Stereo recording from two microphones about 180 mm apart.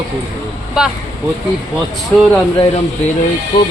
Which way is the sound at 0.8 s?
5° right (ahead or behind).